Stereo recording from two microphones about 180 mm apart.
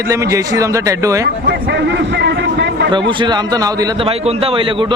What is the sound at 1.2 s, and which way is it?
A man's voice, 70° right (ahead or behind).